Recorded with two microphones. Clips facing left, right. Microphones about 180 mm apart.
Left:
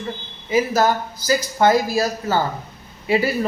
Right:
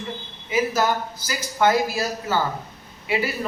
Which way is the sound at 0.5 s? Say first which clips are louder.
Left 4 dB; 40° left (ahead or behind).